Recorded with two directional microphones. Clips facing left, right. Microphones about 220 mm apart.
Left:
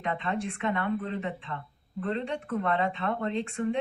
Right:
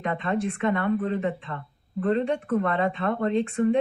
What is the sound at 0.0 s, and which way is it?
Speech, 50° right (ahead or behind).